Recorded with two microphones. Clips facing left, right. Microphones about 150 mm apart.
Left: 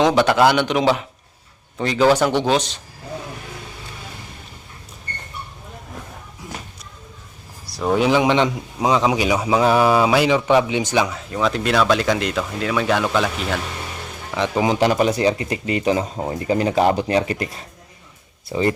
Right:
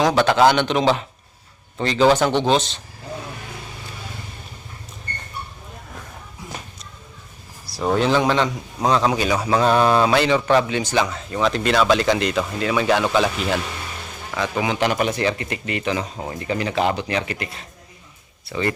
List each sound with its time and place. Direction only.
0.2 s a man's voice: 5° left (ahead or behind)
7.8 s a man's voice: 5° left (ahead or behind)
14.3 s speech: 20° left (ahead or behind)
14.6 s speech: 35° left (ahead or behind)
16.7 s speech: 45° left (ahead or behind)